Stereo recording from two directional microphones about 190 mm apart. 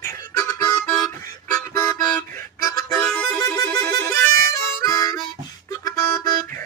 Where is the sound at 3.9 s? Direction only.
55° right (ahead or behind).